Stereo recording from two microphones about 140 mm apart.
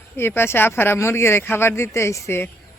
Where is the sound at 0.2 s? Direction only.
15° left (ahead or behind).